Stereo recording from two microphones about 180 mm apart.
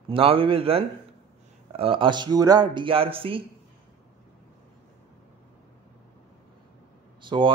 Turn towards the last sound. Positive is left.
turn(degrees=-25)  # may be behind; listen again after turning